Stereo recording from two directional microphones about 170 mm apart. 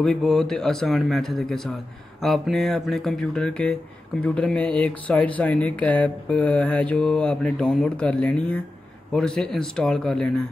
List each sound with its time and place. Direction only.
0.0 s speech: 5° left (ahead or behind)